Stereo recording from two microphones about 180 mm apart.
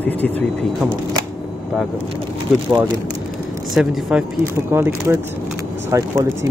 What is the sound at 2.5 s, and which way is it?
Speech, centre (ahead or behind).